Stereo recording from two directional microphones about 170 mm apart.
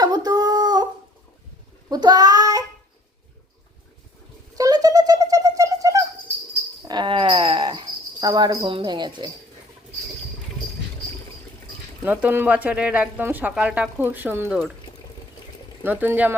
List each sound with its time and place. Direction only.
0.0 s a sound: 20° right (ahead or behind)
1.9 s child singing: 25° right (ahead or behind)
4.5 s a sound: 20° right (ahead or behind)
6.5 s cricket: 25° right (ahead or behind)
12.0 s speech: 10° right (ahead or behind)
15.8 s speech: 10° right (ahead or behind)